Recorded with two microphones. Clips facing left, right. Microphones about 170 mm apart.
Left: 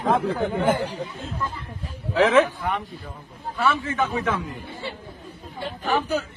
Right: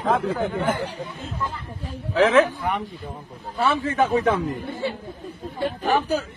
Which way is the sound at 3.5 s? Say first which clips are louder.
Right 2 dB; 35° right (ahead or behind).